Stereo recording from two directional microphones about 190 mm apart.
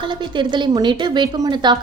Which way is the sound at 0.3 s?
25° right (ahead or behind).